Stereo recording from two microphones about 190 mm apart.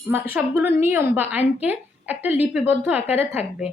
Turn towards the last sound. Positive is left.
turn(degrees=-10)  # may be behind; listen again after turning